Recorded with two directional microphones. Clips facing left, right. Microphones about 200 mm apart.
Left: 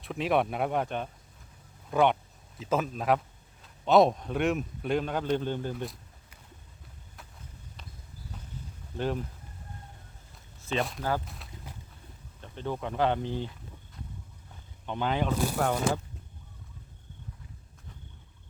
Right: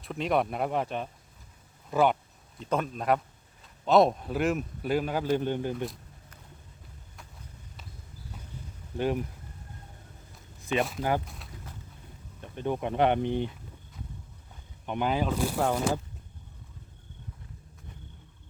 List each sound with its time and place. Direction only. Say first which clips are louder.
0.0 s a man's voice: even; centre (ahead or behind); by 5.7 s 15° right (ahead or behind)
5.7 s a man's voice: right 3 dB; centre (ahead or behind)
9.0 s speech: right 3 dB; 15° right (ahead or behind)
10.6 s a sound: right 2 dB; 15° right (ahead or behind)
12.4 s speech: right 3 dB; 15° right (ahead or behind)
14.8 s speech: right 1 dB; 15° right (ahead or behind)